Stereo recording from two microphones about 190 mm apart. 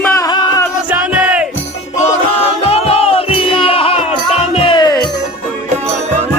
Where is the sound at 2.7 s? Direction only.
30° left (ahead or behind).